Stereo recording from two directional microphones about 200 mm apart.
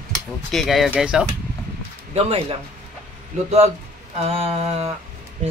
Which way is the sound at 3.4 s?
30° right (ahead or behind).